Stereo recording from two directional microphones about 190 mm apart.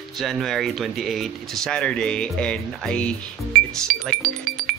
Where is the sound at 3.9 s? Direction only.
50° right (ahead or behind).